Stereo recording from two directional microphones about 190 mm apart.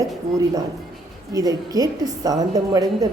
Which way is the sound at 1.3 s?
20° right (ahead or behind).